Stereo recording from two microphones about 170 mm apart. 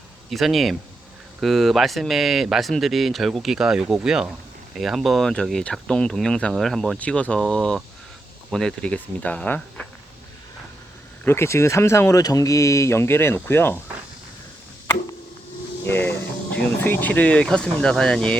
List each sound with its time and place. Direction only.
0.3 s speech: centre (ahead or behind)
11.3 s speech: 15° left (ahead or behind)
15.8 s speech: 15° left (ahead or behind)